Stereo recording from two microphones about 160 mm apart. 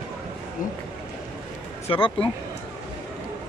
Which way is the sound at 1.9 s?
35° left (ahead or behind).